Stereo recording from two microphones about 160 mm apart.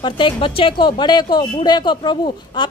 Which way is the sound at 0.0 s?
35° left (ahead or behind).